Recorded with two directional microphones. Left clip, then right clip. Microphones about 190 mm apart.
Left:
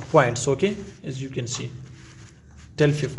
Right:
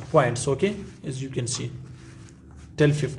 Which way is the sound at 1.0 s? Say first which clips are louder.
Right 1 dB; 5° right (ahead or behind).